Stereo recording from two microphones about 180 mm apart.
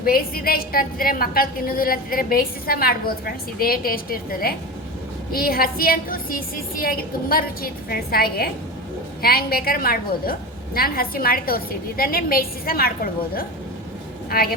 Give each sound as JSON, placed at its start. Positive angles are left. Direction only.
{"t": 0.0, "sound": "a woman's voice", "side_deg": 55}
{"t": 14.3, "sound": "speech", "side_deg": 55}